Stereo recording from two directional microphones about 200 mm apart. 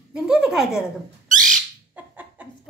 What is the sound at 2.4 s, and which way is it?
Chuckle, 5° right (ahead or behind).